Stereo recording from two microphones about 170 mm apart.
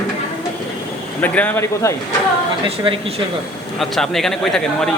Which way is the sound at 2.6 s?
30° right (ahead or behind).